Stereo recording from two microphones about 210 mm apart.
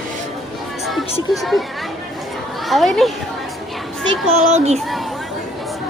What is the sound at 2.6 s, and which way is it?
Speech, centre (ahead or behind).